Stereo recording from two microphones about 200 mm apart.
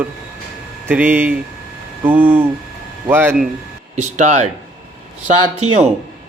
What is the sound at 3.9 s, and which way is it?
Speech, 35° right (ahead or behind).